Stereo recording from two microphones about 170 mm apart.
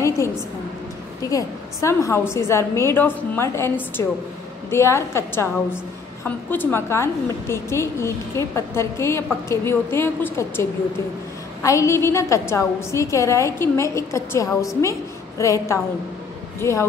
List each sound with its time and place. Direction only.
1.3 s a woman's voice: 15° left (ahead or behind)